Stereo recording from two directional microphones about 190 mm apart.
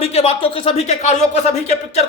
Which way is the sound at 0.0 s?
30° left (ahead or behind).